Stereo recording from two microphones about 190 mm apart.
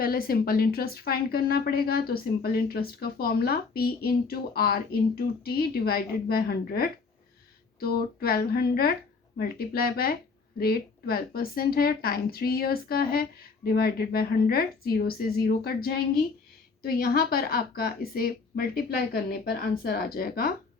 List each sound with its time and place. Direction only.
0.0 s a woman's voice: 50° left (ahead or behind)